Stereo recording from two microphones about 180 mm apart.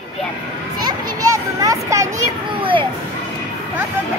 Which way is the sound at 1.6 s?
20° right (ahead or behind).